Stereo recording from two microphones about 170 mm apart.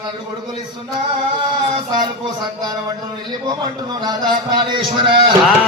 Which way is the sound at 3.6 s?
25° right (ahead or behind).